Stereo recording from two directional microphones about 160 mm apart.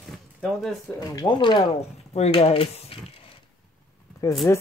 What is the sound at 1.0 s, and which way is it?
Speech, 25° left (ahead or behind).